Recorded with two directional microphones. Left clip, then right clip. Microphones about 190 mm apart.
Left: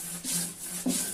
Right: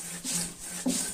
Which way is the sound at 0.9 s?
15° right (ahead or behind).